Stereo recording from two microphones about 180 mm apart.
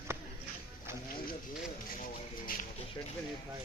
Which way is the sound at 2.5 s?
50° left (ahead or behind).